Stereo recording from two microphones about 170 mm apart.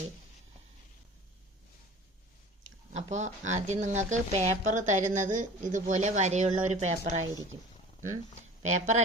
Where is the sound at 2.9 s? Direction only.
45° right (ahead or behind).